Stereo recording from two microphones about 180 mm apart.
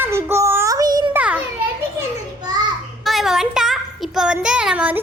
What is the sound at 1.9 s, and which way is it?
Children playing, 25° right (ahead or behind).